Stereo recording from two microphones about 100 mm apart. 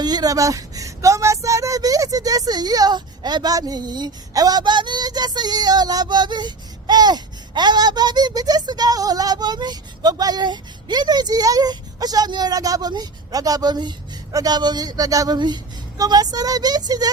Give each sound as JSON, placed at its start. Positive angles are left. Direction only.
{"t": 0.0, "sound": "speech", "side_deg": -40}